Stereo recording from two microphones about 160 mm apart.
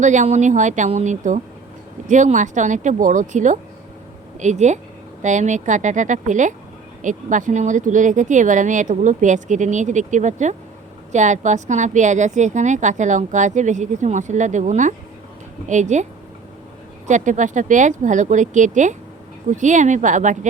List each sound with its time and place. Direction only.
0.0 s a woman's voice: 50° right (ahead or behind)
17.1 s a woman's voice: 50° right (ahead or behind)